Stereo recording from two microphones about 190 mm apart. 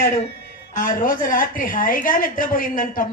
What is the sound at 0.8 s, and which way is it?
A woman's voice, 45° left (ahead or behind).